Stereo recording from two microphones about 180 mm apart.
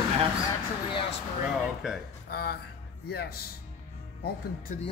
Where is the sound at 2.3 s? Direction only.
60° left (ahead or behind).